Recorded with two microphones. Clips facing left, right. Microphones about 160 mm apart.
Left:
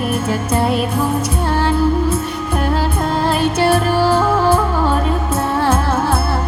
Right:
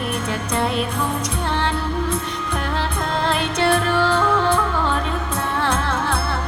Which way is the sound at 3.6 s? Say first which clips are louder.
Left 3 dB; 40° left (ahead or behind).